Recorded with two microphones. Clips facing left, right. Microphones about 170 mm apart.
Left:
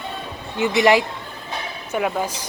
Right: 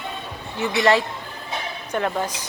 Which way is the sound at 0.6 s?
15° left (ahead or behind).